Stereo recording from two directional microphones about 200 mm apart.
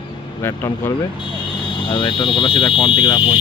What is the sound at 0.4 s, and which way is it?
Speech, 15° left (ahead or behind).